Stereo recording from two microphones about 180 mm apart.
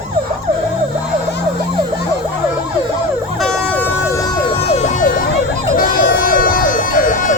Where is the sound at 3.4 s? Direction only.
5° left (ahead or behind).